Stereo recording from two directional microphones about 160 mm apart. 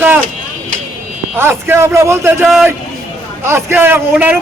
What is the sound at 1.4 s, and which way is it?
A man's voice, 15° right (ahead or behind).